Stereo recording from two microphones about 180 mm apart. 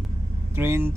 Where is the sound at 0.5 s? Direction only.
15° right (ahead or behind).